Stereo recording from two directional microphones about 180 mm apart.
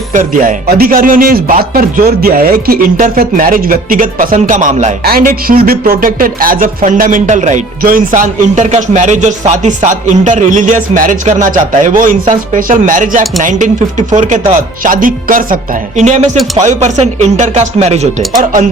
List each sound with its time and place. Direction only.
0.1 s speech: 45° right (ahead or behind)